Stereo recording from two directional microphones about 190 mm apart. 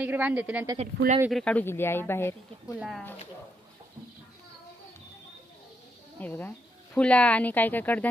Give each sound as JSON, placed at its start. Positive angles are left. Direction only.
{"t": 0.0, "sound": "a woman's voice", "side_deg": -10}
{"t": 0.7, "sound": "speech", "side_deg": -35}
{"t": 1.3, "sound": "speech", "side_deg": 5}
{"t": 2.7, "sound": "a woman's voice", "side_deg": -5}
{"t": 6.1, "sound": "speech", "side_deg": 10}